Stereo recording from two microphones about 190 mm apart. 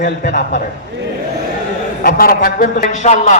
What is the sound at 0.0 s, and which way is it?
Speech, 40° left (ahead or behind).